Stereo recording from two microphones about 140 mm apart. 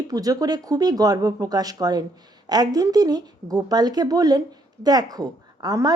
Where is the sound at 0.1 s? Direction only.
25° right (ahead or behind).